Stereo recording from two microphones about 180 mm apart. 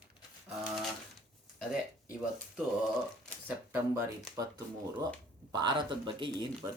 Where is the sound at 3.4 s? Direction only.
10° right (ahead or behind).